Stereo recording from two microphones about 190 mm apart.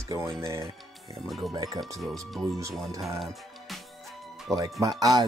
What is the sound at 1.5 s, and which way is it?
Speech, 15° right (ahead or behind).